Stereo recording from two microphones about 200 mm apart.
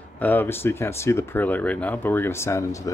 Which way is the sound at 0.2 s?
10° left (ahead or behind).